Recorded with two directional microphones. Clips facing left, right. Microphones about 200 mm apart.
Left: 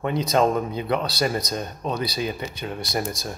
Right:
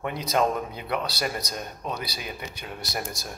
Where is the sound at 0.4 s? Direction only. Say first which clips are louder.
Left 3 dB; 30° left (ahead or behind).